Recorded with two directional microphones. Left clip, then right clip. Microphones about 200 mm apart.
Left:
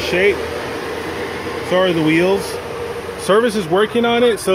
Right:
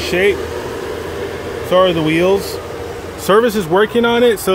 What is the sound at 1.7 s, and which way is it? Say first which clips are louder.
Speech: right 2 dB; 10° right (ahead or behind).